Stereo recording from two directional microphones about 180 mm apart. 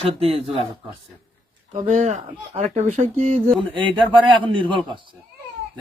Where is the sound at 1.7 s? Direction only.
40° right (ahead or behind).